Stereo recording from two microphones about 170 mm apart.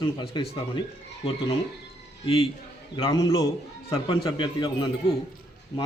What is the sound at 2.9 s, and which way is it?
A man's voice, 20° left (ahead or behind).